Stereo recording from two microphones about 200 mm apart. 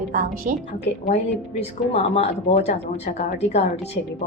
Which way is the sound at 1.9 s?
30° left (ahead or behind).